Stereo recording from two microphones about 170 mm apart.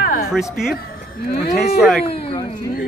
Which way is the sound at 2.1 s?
30° left (ahead or behind).